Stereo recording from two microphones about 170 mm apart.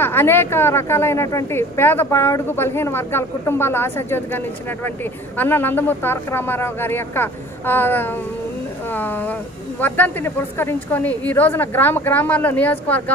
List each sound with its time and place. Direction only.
0.0 s a woman's voice: 15° left (ahead or behind)
5.4 s a woman's voice: 10° left (ahead or behind)